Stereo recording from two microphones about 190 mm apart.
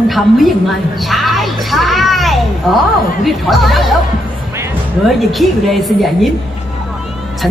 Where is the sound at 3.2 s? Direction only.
Centre (ahead or behind).